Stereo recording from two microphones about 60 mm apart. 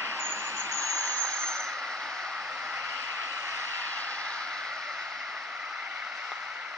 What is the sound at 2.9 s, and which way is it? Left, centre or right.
Vehicle, right.